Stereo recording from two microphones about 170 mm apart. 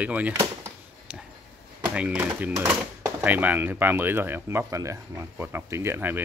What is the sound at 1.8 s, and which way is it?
Speech, 5° right (ahead or behind).